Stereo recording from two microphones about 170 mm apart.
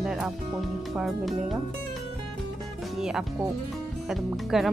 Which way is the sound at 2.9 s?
5° right (ahead or behind).